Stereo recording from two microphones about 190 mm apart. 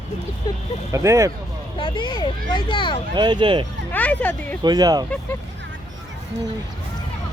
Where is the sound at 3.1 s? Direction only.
25° right (ahead or behind).